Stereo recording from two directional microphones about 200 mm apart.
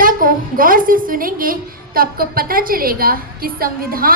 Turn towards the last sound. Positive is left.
turn(degrees=-45)  # may be behind; listen again after turning